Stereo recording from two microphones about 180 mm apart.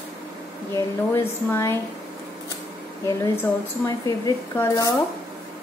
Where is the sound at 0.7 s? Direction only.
15° left (ahead or behind).